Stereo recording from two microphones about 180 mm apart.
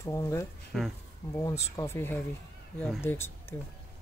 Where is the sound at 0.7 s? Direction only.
Centre (ahead or behind).